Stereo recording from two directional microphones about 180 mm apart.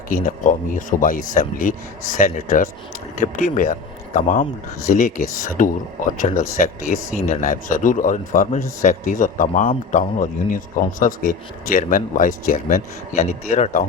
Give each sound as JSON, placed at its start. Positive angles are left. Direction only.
{"t": 0.1, "sound": "a man's voice", "side_deg": 45}